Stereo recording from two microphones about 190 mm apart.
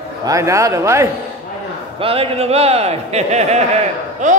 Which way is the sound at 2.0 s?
30° right (ahead or behind).